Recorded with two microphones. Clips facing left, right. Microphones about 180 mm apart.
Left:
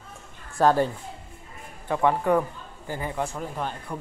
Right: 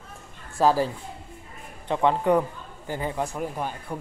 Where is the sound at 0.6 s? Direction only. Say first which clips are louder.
Left 1 dB; centre (ahead or behind).